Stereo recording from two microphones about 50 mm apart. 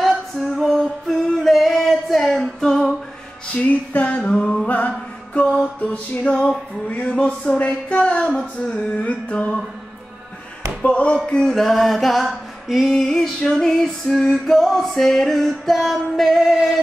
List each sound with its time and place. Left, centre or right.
0.1 s female singing: centre
3.5 s music: left
6.9 s music: left
7.2 s music: centre
10.8 s music: left
11.5 s music: centre
12.3 s female singing: centre
12.9 s music: centre